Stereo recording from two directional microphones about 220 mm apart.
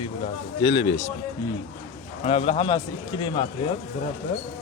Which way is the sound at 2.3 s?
25° left (ahead or behind).